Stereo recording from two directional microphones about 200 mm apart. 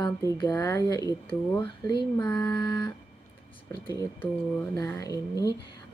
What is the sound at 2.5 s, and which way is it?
Speech, 25° left (ahead or behind).